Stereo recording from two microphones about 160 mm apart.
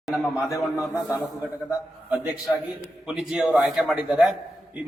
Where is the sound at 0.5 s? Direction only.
20° left (ahead or behind).